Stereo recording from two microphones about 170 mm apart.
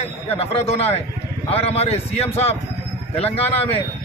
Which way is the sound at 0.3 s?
35° left (ahead or behind).